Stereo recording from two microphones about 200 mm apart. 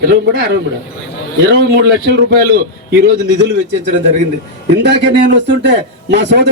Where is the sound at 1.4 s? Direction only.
55° right (ahead or behind).